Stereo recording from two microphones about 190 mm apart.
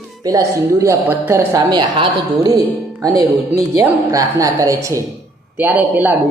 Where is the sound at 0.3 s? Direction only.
15° right (ahead or behind).